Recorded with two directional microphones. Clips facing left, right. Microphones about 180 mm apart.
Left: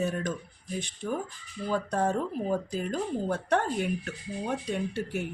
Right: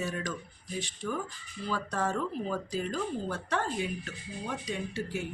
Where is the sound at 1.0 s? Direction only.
35° left (ahead or behind).